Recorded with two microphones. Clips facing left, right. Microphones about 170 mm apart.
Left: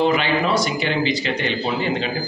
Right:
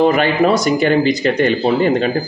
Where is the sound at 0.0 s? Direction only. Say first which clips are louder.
Right 6 dB; 50° right (ahead or behind).